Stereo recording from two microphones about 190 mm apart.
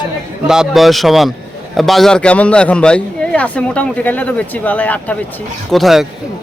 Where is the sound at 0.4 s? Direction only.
5° right (ahead or behind).